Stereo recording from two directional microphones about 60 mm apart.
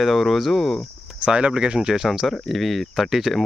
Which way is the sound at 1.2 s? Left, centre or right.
Centre.